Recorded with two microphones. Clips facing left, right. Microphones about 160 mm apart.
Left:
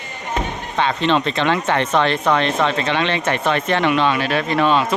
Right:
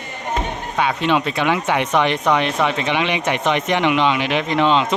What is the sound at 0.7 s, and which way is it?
Speech, 10° right (ahead or behind).